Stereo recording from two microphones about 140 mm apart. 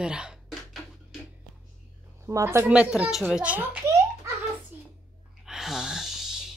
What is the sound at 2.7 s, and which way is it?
Speech, 5° right (ahead or behind).